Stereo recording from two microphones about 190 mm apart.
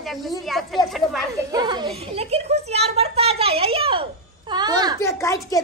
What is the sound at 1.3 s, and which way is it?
A child's voice, 20° right (ahead or behind).